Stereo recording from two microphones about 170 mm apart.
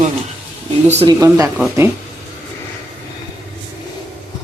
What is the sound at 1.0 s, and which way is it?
Speech, 20° right (ahead or behind).